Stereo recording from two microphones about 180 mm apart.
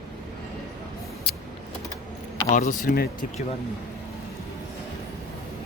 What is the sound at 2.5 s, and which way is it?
Speech, 45° left (ahead or behind).